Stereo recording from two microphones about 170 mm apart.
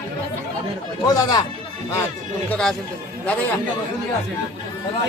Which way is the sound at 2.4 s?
5° left (ahead or behind).